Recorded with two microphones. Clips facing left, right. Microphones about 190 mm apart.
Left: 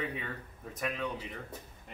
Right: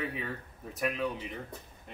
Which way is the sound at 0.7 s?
10° right (ahead or behind).